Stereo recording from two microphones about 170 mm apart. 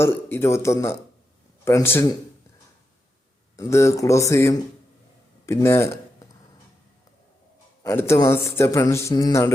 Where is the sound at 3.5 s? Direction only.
15° left (ahead or behind).